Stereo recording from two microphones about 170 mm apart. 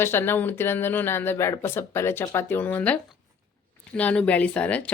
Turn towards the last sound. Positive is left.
turn(degrees=10)  # may be behind; listen again after turning